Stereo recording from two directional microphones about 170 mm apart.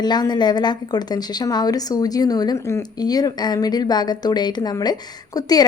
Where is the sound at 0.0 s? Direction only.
25° left (ahead or behind).